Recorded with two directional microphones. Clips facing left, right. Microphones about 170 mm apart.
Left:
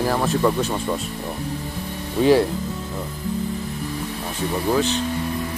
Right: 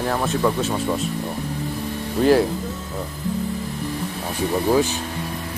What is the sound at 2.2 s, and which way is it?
Speech, centre (ahead or behind).